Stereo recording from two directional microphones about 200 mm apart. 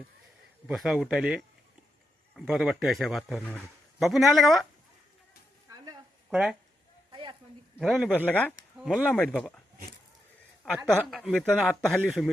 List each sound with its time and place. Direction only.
0.7 s speech: centre (ahead or behind)
5.6 s a sound: 20° right (ahead or behind)
6.3 s speech: centre (ahead or behind)
7.1 s a sound: 25° right (ahead or behind)
7.8 s speech: centre (ahead or behind)
8.8 s speech: 5° right (ahead or behind)
10.8 s speech: centre (ahead or behind)